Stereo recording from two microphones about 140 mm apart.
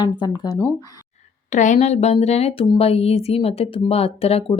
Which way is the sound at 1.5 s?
60° left (ahead or behind).